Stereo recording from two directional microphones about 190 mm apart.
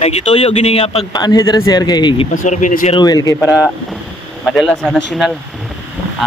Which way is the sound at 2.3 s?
40° left (ahead or behind).